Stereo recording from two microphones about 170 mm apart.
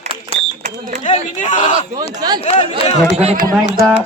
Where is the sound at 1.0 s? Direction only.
45° left (ahead or behind).